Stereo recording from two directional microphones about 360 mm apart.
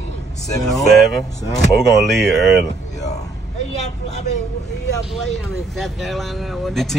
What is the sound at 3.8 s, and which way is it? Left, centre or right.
Speech, centre.